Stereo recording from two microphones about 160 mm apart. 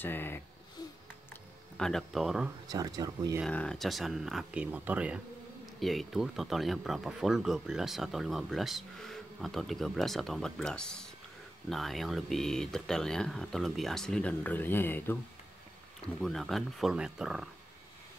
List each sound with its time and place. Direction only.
0.0 s speech: 10° left (ahead or behind)
1.3 s a sound: 5° left (ahead or behind)
2.7 s speech: 25° right (ahead or behind)
3.4 s speech: 5° left (ahead or behind)
16.2 s speech: centre (ahead or behind)